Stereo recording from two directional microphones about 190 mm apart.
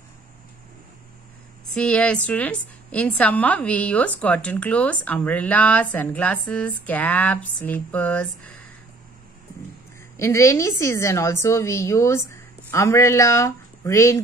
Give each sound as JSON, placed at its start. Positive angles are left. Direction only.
{"t": 1.8, "sound": "a woman's voice", "side_deg": 5}
{"t": 10.1, "sound": "a woman's voice", "side_deg": 15}